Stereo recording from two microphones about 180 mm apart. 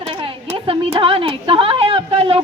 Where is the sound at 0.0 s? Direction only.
30° right (ahead or behind).